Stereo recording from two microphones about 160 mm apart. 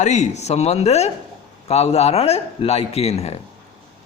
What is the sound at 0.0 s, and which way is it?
Speech, 45° left (ahead or behind).